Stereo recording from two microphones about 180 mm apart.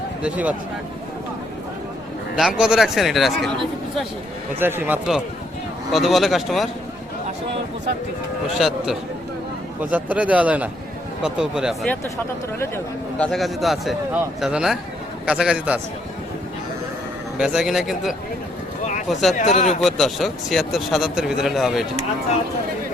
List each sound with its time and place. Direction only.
0.2 s a man's voice: 5° right (ahead or behind)
2.3 s a man's voice: centre (ahead or behind)
8.5 s a man's voice: centre (ahead or behind)
12.5 s a man's voice: 10° left (ahead or behind); by 15.8 s 5° right (ahead or behind)
17.3 s a man's voice: 5° right (ahead or behind)
19.4 s a man's voice: 40° left (ahead or behind)
19.8 s a man's voice: centre (ahead or behind)